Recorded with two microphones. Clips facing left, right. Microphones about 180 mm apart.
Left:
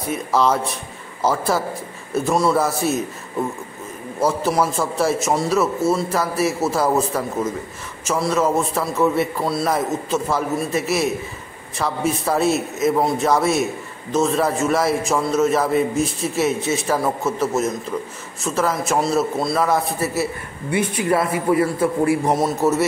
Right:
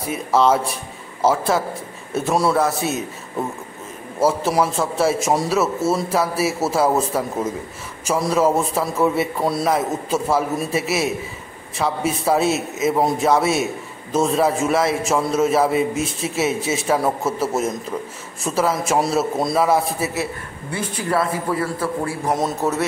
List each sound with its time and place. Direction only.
0.1 s a man's voice: 5° right (ahead or behind)
4.2 s a man's voice: 5° right (ahead or behind)
20.7 s a man's voice: 15° left (ahead or behind)
22.4 s a man's voice: 5° left (ahead or behind)